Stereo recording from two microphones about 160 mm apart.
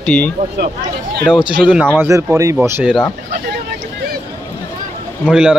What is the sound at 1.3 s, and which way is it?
Speech, 5° right (ahead or behind).